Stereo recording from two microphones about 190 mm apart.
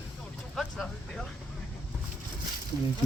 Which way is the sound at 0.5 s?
Centre (ahead or behind).